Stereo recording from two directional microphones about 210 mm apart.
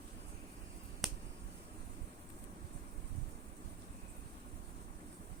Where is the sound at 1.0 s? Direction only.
Centre (ahead or behind).